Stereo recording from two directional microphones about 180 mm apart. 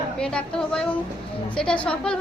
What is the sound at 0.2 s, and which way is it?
A woman's voice, 5° left (ahead or behind).